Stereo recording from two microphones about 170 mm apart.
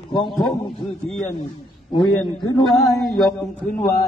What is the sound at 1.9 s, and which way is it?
A man's voice, centre (ahead or behind).